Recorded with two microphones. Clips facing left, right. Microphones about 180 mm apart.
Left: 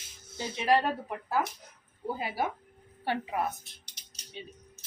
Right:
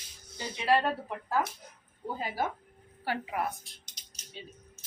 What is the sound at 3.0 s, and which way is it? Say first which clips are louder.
Speech: left 2 dB; 25° left (ahead or behind).